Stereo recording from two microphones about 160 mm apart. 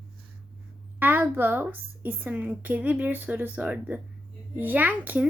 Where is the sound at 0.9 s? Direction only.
10° right (ahead or behind).